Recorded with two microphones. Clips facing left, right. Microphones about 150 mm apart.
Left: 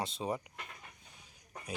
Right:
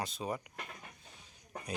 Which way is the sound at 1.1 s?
10° left (ahead or behind).